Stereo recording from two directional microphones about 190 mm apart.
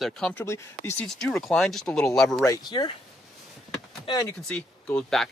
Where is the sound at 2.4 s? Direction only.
20° left (ahead or behind).